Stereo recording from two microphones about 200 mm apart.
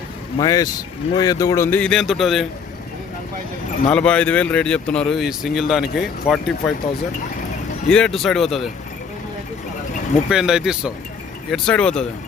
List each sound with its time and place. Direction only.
0.3 s a man's voice: 20° left (ahead or behind); by 2.5 s centre (ahead or behind)
3.9 s speech: 5° left (ahead or behind)
7.9 s speech: 5° left (ahead or behind)
10.2 s speech: 5° right (ahead or behind)